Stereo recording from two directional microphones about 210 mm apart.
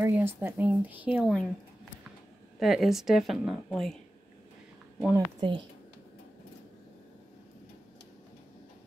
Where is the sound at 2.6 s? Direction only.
Centre (ahead or behind).